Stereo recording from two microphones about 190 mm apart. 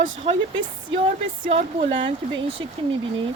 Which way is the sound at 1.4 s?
30° right (ahead or behind).